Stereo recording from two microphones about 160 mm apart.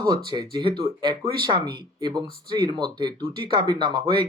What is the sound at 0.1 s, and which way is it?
Speech, 30° right (ahead or behind).